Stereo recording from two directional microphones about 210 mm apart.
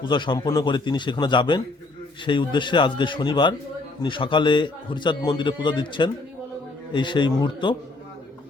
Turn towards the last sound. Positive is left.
turn(degrees=20)  # may be behind; listen again after turning